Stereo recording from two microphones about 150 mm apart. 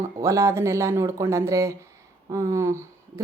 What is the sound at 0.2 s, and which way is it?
Speech, 20° right (ahead or behind).